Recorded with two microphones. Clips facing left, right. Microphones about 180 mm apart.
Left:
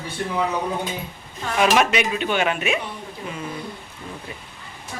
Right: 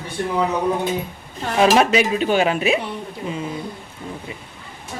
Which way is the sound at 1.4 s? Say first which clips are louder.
Right 3 dB; 35° right (ahead or behind).